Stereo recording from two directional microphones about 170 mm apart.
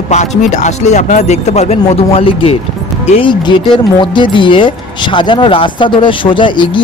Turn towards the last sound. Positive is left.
turn(degrees=30)  # may be behind; listen again after turning